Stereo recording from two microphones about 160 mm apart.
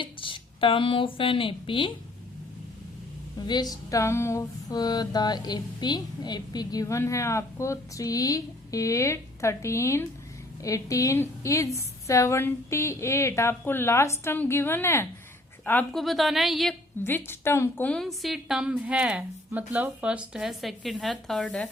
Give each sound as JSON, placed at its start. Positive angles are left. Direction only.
{"t": 0.0, "sound": "speech", "side_deg": 30}
{"t": 3.4, "sound": "mantra", "side_deg": 25}
{"t": 10.6, "sound": "a woman's voice", "side_deg": 20}
{"t": 17.0, "sound": "a woman's voice", "side_deg": 15}